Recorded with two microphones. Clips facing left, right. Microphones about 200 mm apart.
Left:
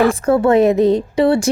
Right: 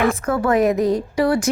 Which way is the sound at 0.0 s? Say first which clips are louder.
Left 6 dB; 30° left (ahead or behind).